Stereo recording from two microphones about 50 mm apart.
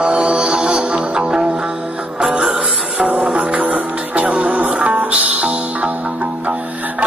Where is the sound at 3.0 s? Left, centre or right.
Right.